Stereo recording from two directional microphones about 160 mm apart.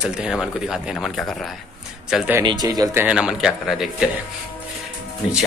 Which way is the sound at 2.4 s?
25° right (ahead or behind).